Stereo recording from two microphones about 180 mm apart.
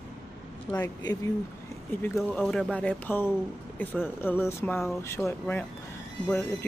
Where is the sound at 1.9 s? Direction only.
10° left (ahead or behind).